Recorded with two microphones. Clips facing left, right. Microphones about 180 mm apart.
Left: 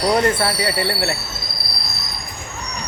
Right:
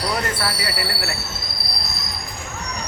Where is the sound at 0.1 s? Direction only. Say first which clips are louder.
Left 7 dB; 30° left (ahead or behind).